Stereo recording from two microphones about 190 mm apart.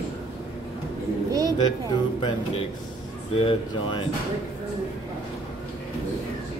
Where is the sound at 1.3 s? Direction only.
20° right (ahead or behind).